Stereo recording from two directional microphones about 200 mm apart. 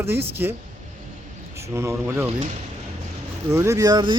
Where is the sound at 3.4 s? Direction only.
15° right (ahead or behind).